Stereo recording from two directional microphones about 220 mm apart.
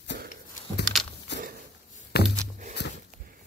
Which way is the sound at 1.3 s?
55° left (ahead or behind).